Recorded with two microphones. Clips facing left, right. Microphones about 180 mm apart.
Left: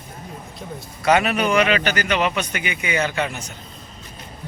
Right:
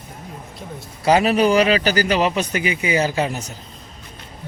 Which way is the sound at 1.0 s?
30° right (ahead or behind).